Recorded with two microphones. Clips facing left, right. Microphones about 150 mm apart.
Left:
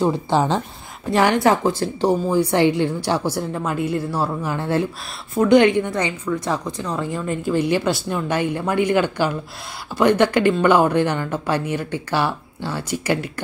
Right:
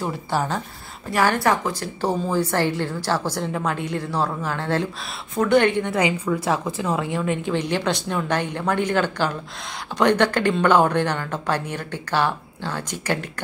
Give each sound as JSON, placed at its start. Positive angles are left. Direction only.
{"t": 0.0, "sound": "a woman's voice", "side_deg": 20}
{"t": 2.0, "sound": "a woman's voice", "side_deg": 10}
{"t": 5.9, "sound": "a woman's voice", "side_deg": -10}